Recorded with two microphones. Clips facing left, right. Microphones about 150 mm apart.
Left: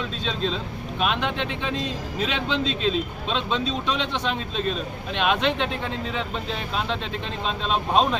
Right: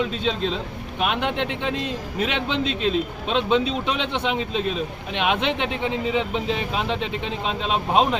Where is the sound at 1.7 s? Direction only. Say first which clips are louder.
Right 2 dB; 65° right (ahead or behind).